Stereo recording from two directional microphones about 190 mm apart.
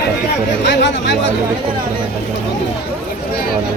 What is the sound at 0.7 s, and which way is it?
Speech, 65° left (ahead or behind).